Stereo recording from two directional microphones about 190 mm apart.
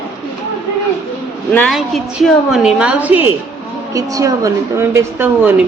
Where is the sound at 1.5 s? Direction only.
5° left (ahead or behind); by 5.5 s 15° right (ahead or behind).